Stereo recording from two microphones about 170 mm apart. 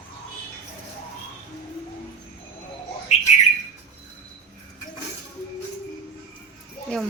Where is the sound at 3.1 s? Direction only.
40° left (ahead or behind).